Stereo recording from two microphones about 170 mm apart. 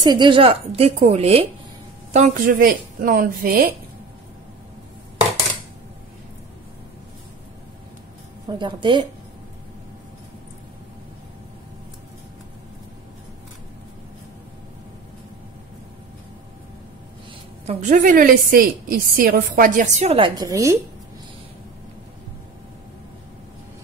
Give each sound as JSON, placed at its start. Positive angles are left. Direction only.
{"t": 0.0, "sound": "a woman's voice", "side_deg": -25}
{"t": 2.1, "sound": "a woman's voice", "side_deg": -50}
{"t": 8.5, "sound": "speech", "side_deg": -25}
{"t": 17.6, "sound": "a woman's voice", "side_deg": -50}
{"t": 20.4, "sound": "speech", "side_deg": -20}